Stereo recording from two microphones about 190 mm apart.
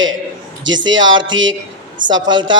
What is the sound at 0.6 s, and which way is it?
A man's voice, 80° right.